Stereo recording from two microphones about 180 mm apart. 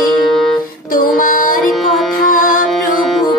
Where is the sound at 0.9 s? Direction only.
50° left (ahead or behind).